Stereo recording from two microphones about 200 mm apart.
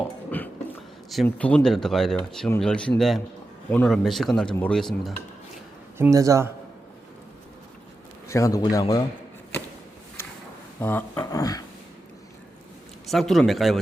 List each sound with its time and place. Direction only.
0.3 s a sound: 10° left (ahead or behind)
1.1 s speech: 5° left (ahead or behind)
6.0 s speech: 15° right (ahead or behind)
8.3 s speech: 15° left (ahead or behind)
10.8 s speech: 10° left (ahead or behind)
13.1 s speech: centre (ahead or behind)